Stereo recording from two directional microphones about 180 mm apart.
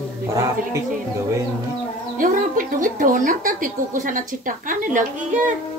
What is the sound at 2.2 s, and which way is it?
Speech, 50° right (ahead or behind).